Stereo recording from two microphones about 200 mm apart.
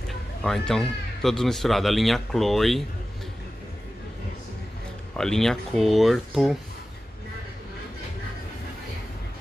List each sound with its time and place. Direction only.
0.4 s speech: centre (ahead or behind)
5.1 s speech: 5° left (ahead or behind)